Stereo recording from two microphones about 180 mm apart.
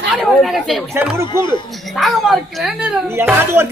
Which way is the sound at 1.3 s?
25° left (ahead or behind).